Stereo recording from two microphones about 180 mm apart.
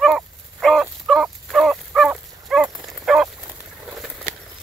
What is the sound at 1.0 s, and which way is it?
Dog, centre (ahead or behind).